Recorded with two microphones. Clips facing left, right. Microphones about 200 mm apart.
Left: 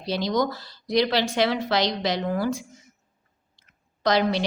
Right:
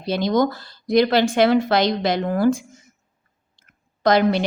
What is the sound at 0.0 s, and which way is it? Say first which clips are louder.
A woman's voice: right 5 dB; 55° right (ahead or behind).